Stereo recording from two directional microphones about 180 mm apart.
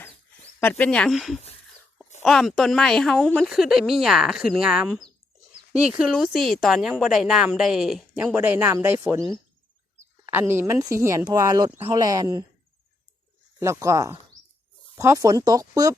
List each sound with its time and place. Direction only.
0.6 s speech: 5° left (ahead or behind); by 12.5 s 20° right (ahead or behind)
13.6 s speech: 15° right (ahead or behind)